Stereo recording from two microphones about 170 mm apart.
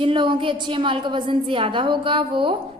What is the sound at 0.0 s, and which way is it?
A woman's voice, 30° right (ahead or behind).